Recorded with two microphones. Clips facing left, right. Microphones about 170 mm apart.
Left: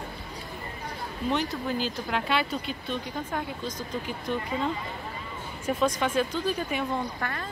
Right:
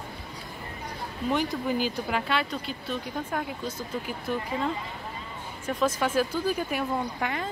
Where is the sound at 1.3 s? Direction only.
10° right (ahead or behind).